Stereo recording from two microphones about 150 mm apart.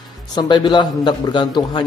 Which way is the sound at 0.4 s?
30° left (ahead or behind).